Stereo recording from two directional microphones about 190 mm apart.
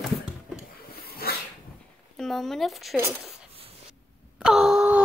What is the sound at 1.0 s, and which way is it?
Dog, 55° left (ahead or behind).